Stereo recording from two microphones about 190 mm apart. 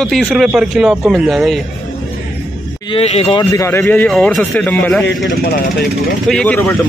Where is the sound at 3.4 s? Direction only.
15° left (ahead or behind).